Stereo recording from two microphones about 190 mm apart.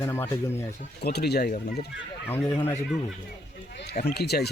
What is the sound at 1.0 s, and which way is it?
Speech, 55° left (ahead or behind).